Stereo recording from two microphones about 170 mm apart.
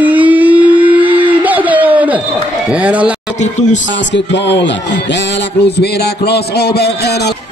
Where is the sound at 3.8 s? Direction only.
90° left; by 7.4 s 75° left (ahead or behind).